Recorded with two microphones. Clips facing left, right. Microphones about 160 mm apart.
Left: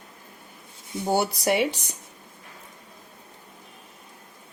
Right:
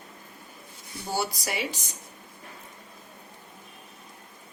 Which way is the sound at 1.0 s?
60° left (ahead or behind).